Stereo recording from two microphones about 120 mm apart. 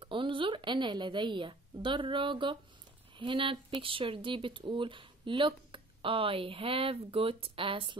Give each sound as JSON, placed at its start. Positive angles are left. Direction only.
{"t": 0.0, "sound": "speech", "side_deg": -45}